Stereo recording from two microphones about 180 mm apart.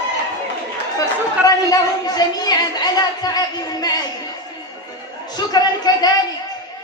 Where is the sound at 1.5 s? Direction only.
20° left (ahead or behind).